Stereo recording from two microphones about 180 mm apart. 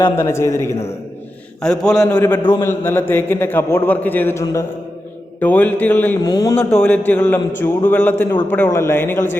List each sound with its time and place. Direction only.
0.2 s a man's voice: 15° left (ahead or behind)
1.6 s a man's voice: 5° left (ahead or behind)
6.2 s a man's voice: 20° left (ahead or behind)
6.7 s a man's voice: 10° left (ahead or behind)
7.3 s a man's voice: 20° left (ahead or behind)
7.9 s a man's voice: 10° left (ahead or behind)